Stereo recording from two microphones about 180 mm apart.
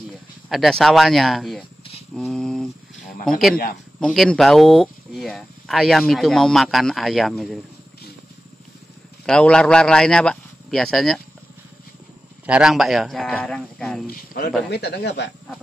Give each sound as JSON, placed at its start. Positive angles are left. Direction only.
{"t": 0.5, "sound": "a man's voice", "side_deg": 0}
{"t": 2.1, "sound": "a sound", "side_deg": 0}
{"t": 3.3, "sound": "a man's voice", "side_deg": 0}
{"t": 9.2, "sound": "a man's voice", "side_deg": 5}
{"t": 12.4, "sound": "a man's voice", "side_deg": -5}
{"t": 14.0, "sound": "speech", "side_deg": 55}
{"t": 14.7, "sound": "speech", "side_deg": 65}